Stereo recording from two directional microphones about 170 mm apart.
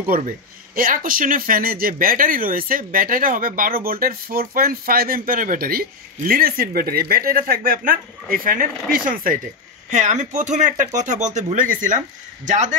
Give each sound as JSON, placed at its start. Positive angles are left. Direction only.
{"t": 0.7, "sound": "speech", "side_deg": -55}
{"t": 9.8, "sound": "speech", "side_deg": -45}